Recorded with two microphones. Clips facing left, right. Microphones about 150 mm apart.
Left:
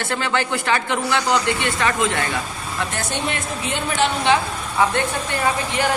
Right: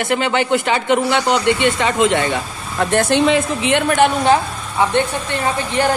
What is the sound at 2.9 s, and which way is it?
Speech, 75° right (ahead or behind).